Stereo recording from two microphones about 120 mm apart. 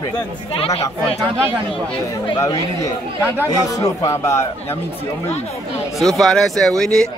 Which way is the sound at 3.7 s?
25° left (ahead or behind).